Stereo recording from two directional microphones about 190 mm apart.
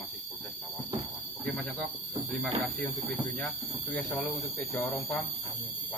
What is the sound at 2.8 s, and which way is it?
Speech, 5° left (ahead or behind).